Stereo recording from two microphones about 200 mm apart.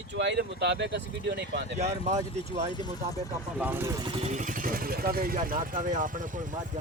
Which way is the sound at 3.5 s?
10° right (ahead or behind).